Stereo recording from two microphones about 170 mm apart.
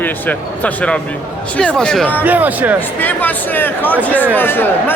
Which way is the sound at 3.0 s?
10° left (ahead or behind).